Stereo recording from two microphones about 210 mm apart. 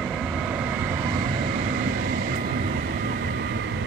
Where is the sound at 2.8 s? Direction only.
50° right (ahead or behind).